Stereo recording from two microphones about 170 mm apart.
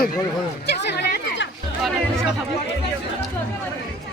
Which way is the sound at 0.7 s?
80° left.